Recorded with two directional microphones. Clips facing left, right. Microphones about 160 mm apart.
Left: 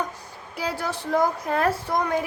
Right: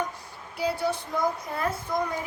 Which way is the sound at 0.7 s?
90° left.